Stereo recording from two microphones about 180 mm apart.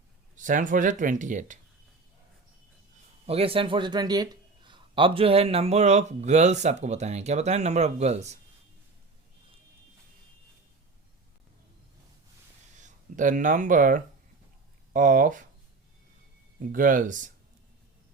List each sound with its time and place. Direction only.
0.3 s speech: 45° right (ahead or behind)
3.2 s a man's voice: 30° right (ahead or behind)
12.7 s speech: 45° right (ahead or behind)
16.6 s speech: 50° right (ahead or behind)